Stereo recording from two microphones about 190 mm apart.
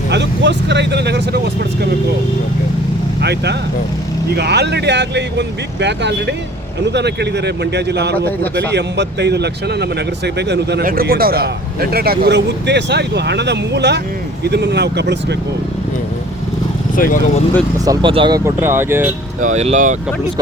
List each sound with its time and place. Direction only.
0.1 s speech: 65° right (ahead or behind)
3.2 s speech: 60° right (ahead or behind)
16.9 s speech: 45° left (ahead or behind)
17.8 s speech: 25° right (ahead or behind); by 19.1 s 10° right (ahead or behind)
19.4 s speech: 40° right (ahead or behind)